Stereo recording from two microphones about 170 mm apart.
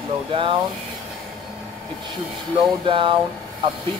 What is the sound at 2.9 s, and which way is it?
Speech, 30° right (ahead or behind).